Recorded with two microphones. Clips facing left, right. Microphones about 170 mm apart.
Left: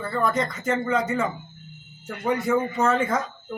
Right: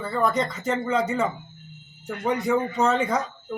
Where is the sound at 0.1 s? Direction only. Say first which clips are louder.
Right 1 dB; centre (ahead or behind).